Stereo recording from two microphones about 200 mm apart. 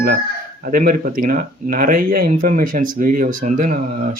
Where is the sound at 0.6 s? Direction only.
45° right (ahead or behind).